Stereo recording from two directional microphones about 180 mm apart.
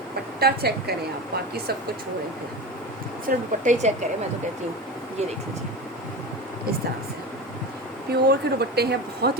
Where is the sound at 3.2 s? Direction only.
40° right (ahead or behind).